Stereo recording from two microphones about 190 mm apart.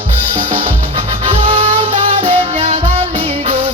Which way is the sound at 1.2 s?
30° right (ahead or behind).